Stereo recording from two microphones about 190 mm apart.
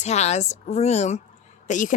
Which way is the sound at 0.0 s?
35° left (ahead or behind).